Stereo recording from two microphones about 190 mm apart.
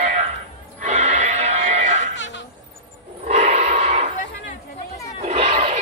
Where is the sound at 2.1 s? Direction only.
75° left (ahead or behind).